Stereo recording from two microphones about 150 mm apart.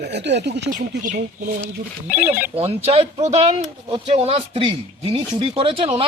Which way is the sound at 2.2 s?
10° right (ahead or behind).